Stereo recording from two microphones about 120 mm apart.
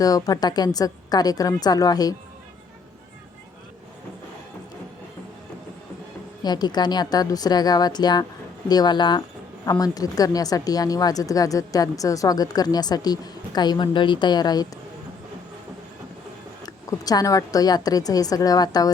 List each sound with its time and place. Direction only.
0.0 s a woman's voice: 30° left (ahead or behind)
6.4 s a woman's voice: 35° left (ahead or behind)
16.6 s a woman's voice: 30° left (ahead or behind)